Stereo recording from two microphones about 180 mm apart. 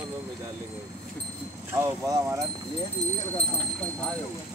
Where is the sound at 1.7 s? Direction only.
15° right (ahead or behind).